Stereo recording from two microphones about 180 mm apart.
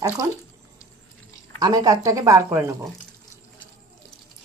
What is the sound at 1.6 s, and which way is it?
Speech, 20° right (ahead or behind).